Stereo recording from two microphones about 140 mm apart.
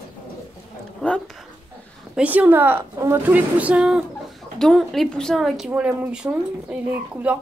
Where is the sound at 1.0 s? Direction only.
5° left (ahead or behind).